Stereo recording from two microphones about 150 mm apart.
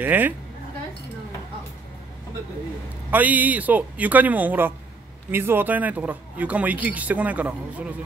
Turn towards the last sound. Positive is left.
turn(degrees=-10)  # may be behind; listen again after turning